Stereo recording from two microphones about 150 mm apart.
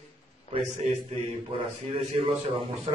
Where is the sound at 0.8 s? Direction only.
50° right (ahead or behind).